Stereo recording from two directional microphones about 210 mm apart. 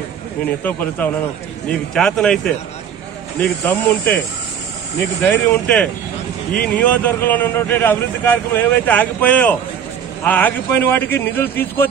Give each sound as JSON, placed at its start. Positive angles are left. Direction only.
{"t": 0.7, "sound": "a man's voice", "side_deg": 5}
{"t": 3.6, "sound": "a man's voice", "side_deg": 15}
{"t": 5.2, "sound": "a man's voice", "side_deg": 10}